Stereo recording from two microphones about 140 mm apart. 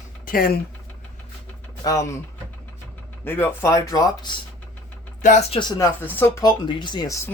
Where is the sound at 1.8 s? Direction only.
25° left (ahead or behind).